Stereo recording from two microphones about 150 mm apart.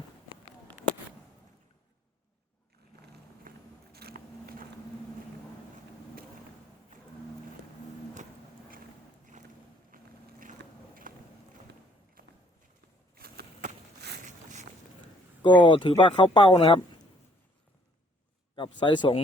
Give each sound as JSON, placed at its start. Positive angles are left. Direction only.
{"t": 3.5, "sound": "biting", "side_deg": -70}
{"t": 3.9, "sound": "biting", "side_deg": -90}
{"t": 9.9, "sound": "biting", "side_deg": -70}
{"t": 11.1, "sound": "run", "side_deg": -65}
{"t": 12.2, "sound": "clip-clop", "side_deg": -70}
{"t": 13.1, "sound": "a sound", "side_deg": -90}
{"t": 14.3, "sound": "boat", "side_deg": -50}
{"t": 15.4, "sound": "speech", "side_deg": 30}
{"t": 18.5, "sound": "speech", "side_deg": 30}